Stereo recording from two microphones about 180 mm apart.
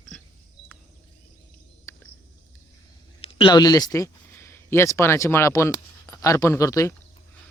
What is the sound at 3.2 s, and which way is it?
Speech, 25° left (ahead or behind).